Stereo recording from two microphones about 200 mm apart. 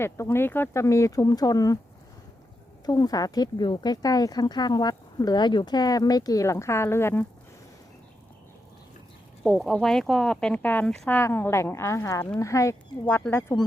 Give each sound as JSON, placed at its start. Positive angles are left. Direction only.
{"t": 0.0, "sound": "speech", "side_deg": 10}
{"t": 2.8, "sound": "speech", "side_deg": 20}
{"t": 9.4, "sound": "speech", "side_deg": 0}